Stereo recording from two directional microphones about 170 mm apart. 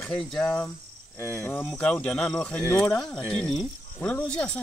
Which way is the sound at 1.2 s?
15° left (ahead or behind).